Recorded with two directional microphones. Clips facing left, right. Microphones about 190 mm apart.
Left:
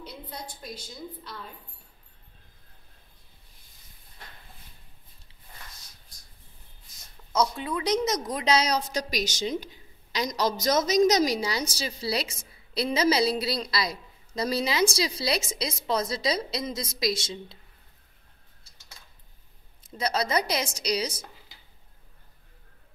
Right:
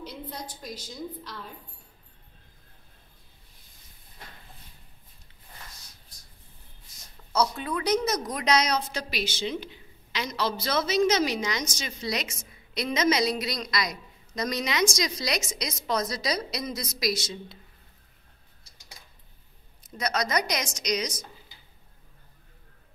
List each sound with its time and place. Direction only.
0.3 s a woman's voice: 10° left (ahead or behind)
7.3 s a woman's voice: 20° left (ahead or behind)
19.8 s a woman's voice: 30° left (ahead or behind)